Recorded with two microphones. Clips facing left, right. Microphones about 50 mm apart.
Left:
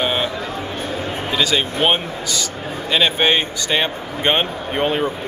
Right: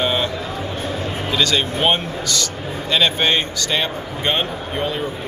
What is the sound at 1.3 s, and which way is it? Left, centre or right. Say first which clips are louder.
Speech: even; centre.